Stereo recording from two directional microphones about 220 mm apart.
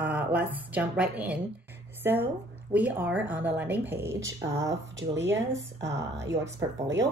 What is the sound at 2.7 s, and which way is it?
Speech, 5° right (ahead or behind).